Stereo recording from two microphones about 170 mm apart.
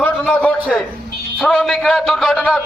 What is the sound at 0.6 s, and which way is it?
A man's voice, 5° right (ahead or behind).